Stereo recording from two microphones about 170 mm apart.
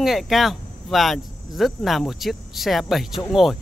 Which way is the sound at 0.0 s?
Centre (ahead or behind).